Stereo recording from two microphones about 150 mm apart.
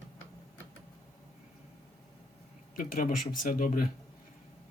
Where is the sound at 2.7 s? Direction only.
65° left (ahead or behind).